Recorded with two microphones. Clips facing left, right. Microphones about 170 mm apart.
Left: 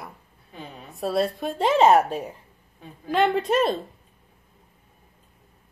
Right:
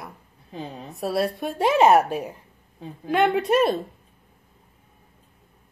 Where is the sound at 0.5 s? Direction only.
30° right (ahead or behind).